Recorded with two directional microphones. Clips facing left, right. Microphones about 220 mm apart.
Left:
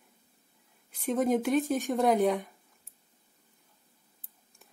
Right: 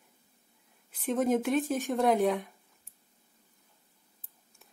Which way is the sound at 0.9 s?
Centre (ahead or behind).